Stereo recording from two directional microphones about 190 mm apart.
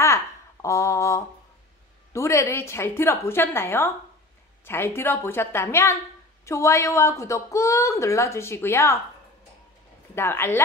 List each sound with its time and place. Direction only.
0.0 s a sound: 15° left (ahead or behind)
2.1 s a woman's voice: 15° left (ahead or behind)
10.1 s a woman's voice: 10° left (ahead or behind)